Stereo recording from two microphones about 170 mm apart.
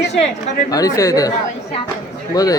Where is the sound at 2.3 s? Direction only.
20° left (ahead or behind).